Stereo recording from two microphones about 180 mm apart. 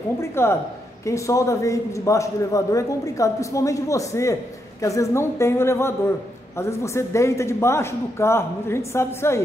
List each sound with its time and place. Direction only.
0.2 s a man's voice: 15° left (ahead or behind)